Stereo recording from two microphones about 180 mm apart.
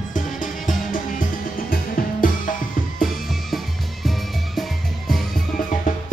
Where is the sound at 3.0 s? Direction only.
Centre (ahead or behind).